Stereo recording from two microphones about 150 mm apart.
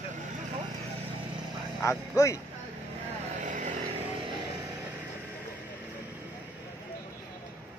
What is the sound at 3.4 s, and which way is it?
Vehicle, 55° right (ahead or behind).